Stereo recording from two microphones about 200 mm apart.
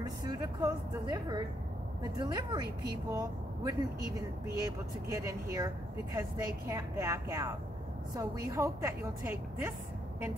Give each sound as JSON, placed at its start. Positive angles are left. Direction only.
{"t": 0.0, "sound": "a woman's voice", "side_deg": -20}
{"t": 5.0, "sound": "a woman's voice", "side_deg": -15}